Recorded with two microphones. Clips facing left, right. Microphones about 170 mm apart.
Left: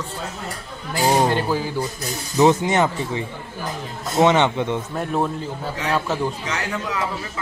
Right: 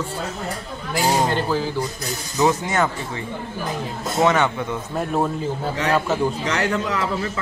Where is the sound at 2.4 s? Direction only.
20° left (ahead or behind).